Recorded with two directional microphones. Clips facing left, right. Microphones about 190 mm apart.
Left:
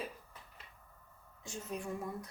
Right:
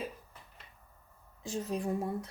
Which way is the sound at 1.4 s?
35° right (ahead or behind).